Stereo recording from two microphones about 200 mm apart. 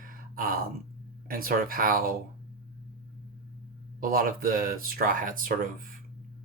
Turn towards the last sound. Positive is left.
turn(degrees=-45)  # may be behind; listen again after turning